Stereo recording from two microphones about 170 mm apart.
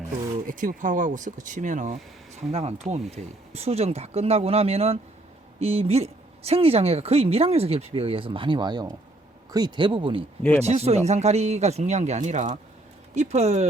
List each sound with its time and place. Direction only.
0.4 s speech: 50° right (ahead or behind)
2.3 s speech: 35° right (ahead or behind)